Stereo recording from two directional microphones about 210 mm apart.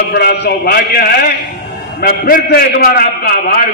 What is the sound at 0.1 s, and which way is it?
A man's voice, 45° left (ahead or behind).